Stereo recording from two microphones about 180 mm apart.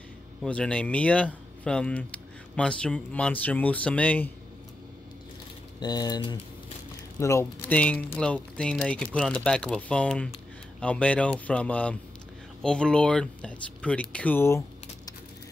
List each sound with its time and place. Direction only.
0.4 s speech: 5° left (ahead or behind)
5.8 s speech: 20° left (ahead or behind)